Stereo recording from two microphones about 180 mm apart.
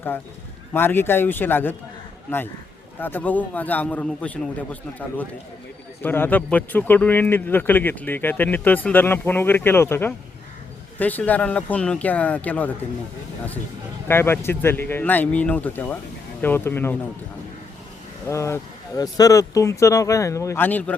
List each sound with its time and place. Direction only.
0.7 s a man's voice: 10° left (ahead or behind)
14.1 s a man's voice: 15° left (ahead or behind)
18.3 s a man's voice: 15° left (ahead or behind)